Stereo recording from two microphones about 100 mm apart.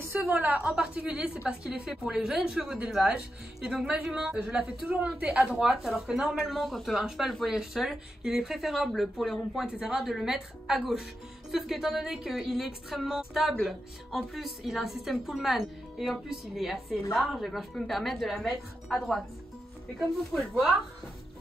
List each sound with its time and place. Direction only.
0.3 s a woman's voice: 20° right (ahead or behind); by 20.6 s centre (ahead or behind)